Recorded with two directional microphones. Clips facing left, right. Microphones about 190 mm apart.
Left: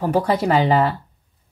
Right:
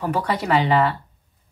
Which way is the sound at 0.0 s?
35° left (ahead or behind).